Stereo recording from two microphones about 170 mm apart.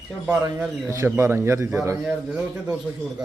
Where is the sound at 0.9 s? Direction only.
15° right (ahead or behind).